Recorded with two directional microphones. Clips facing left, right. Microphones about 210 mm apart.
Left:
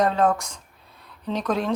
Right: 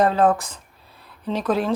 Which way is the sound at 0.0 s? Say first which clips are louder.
Right 3 dB; 5° right (ahead or behind).